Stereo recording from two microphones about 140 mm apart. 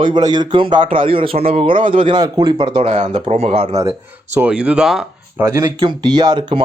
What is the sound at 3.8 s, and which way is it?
A man's voice, 20° right (ahead or behind).